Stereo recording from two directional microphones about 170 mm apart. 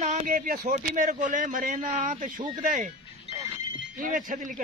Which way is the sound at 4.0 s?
50° right (ahead or behind).